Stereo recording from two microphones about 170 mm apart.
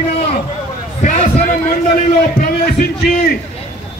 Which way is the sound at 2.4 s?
60° left (ahead or behind).